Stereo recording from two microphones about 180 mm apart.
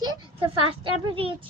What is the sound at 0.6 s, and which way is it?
Speech, 30° right (ahead or behind).